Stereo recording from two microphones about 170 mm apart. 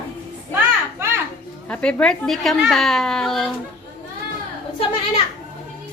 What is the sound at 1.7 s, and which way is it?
A child's voice, 5° left (ahead or behind).